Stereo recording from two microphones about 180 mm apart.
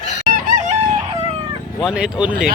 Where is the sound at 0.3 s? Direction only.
50° right (ahead or behind).